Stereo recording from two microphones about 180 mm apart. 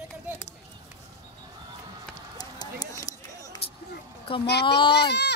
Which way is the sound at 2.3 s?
20° left (ahead or behind).